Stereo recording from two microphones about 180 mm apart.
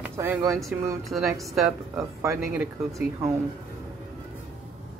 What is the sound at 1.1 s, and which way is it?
Speech, 20° right (ahead or behind).